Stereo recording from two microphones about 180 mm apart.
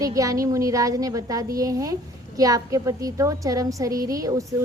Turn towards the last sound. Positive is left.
turn(degrees=-20)  # may be behind; listen again after turning